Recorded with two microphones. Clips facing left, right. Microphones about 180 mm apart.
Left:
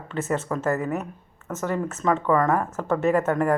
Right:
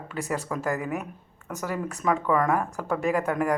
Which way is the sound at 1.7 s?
10° right (ahead or behind).